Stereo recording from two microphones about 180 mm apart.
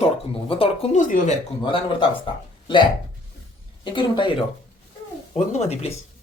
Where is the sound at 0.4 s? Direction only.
30° left (ahead or behind).